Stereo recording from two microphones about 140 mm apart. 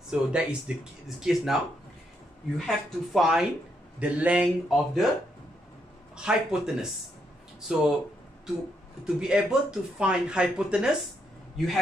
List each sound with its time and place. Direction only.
0.1 s speech: 10° right (ahead or behind)
6.1 s speech: 5° right (ahead or behind)
9.0 s a man's voice: 5° right (ahead or behind)